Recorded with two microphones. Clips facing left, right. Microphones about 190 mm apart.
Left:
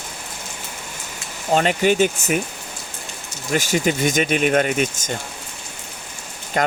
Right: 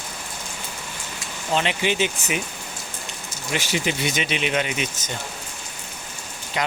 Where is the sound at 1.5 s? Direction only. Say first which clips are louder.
Left 6 dB; 45° left (ahead or behind).